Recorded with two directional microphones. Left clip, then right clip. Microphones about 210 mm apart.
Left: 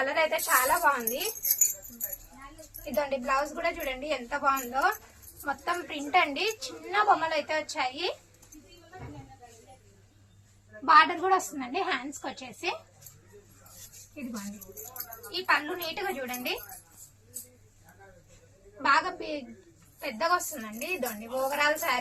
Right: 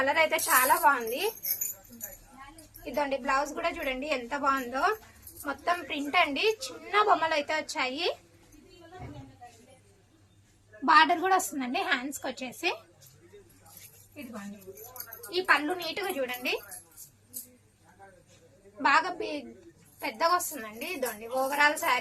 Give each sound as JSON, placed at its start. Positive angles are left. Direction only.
{"t": 0.0, "sound": "a woman's voice", "side_deg": -50}
{"t": 2.8, "sound": "a woman's voice", "side_deg": -55}
{"t": 10.8, "sound": "a woman's voice", "side_deg": -55}
{"t": 15.3, "sound": "a woman's voice", "side_deg": -60}
{"t": 18.8, "sound": "a woman's voice", "side_deg": -55}